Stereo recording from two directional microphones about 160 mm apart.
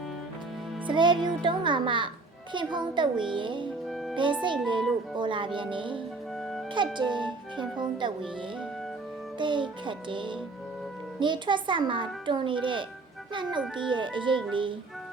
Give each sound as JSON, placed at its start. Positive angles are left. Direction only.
{"t": 0.9, "sound": "a child's voice", "side_deg": -30}
{"t": 9.4, "sound": "a child's voice", "side_deg": -30}